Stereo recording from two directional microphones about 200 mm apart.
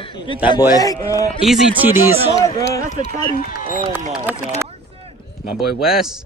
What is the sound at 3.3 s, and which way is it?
Speech, 40° left (ahead or behind).